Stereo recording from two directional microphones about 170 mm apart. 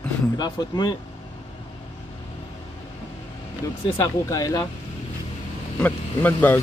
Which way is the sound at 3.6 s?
20° left (ahead or behind).